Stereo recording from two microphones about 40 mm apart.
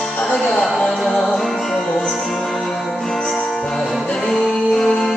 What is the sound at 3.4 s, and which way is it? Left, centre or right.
Music, centre.